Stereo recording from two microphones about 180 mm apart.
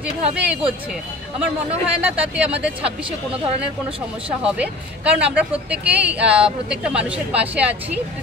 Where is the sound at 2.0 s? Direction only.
5° right (ahead or behind).